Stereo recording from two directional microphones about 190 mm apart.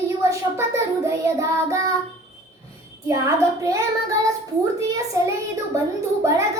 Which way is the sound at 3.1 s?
15° right (ahead or behind).